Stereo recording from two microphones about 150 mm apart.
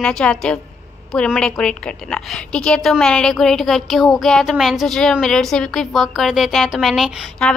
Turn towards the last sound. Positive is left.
turn(degrees=0)  # may be behind; listen again after turning